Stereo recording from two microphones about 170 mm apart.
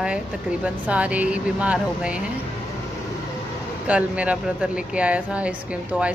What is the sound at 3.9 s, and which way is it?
Speech, 10° right (ahead or behind).